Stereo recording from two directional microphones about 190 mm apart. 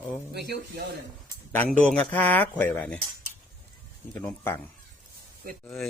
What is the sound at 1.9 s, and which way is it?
Speech, 10° left (ahead or behind).